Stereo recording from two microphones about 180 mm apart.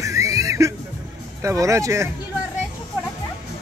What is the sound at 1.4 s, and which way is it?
Speech, 15° right (ahead or behind).